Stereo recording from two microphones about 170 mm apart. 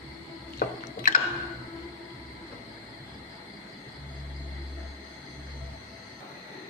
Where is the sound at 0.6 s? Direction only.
60° left (ahead or behind).